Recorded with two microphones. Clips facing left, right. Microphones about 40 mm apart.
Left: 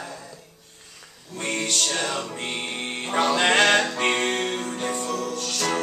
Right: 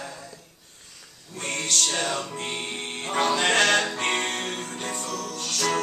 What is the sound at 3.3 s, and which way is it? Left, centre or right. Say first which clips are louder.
A capella: left 3 dB; centre.